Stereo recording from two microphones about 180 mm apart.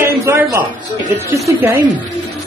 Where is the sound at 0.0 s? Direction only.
15° right (ahead or behind).